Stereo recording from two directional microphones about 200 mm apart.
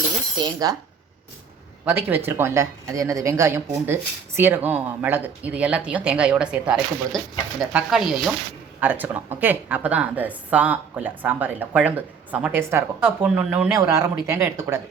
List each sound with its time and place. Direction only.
0.3 s speech: 20° right (ahead or behind)
1.8 s speech: 10° right (ahead or behind)